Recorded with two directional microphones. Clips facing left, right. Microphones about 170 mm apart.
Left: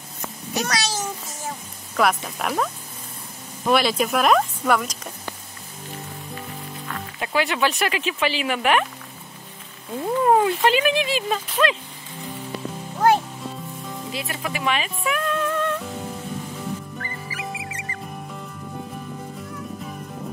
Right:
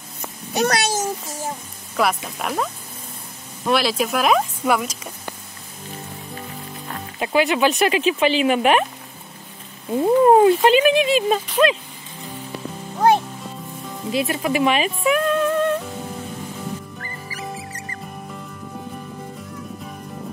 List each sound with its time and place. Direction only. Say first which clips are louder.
0.6 s a child's voice: right 6 dB; 55° right (ahead or behind)
2.0 s speech: even; centre (ahead or behind)
6.9 s speech: right 4 dB; 20° right (ahead or behind)
9.9 s speech: right 6 dB; 25° right (ahead or behind)
14.1 s speech: right 11 dB; 20° right (ahead or behind)
17.4 s music: right 2 dB; centre (ahead or behind)